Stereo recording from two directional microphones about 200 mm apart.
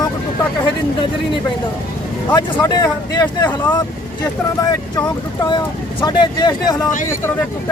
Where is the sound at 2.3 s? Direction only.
20° left (ahead or behind).